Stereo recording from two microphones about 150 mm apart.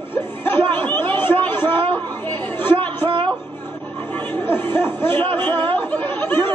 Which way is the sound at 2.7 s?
35° right (ahead or behind).